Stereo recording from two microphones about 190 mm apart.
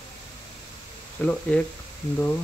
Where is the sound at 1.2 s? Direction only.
10° left (ahead or behind).